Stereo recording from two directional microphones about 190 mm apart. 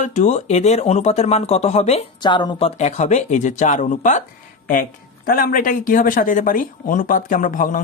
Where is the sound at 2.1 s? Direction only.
25° left (ahead or behind).